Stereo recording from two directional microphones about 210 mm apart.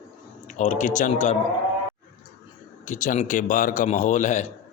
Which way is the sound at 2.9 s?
35° left (ahead or behind).